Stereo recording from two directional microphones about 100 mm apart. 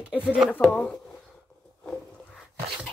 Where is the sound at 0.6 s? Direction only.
10° left (ahead or behind).